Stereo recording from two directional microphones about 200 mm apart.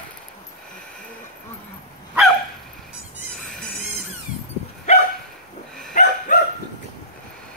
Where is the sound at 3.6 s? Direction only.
Centre (ahead or behind).